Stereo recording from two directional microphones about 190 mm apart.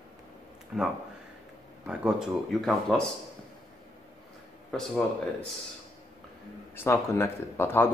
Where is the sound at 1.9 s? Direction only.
5° right (ahead or behind).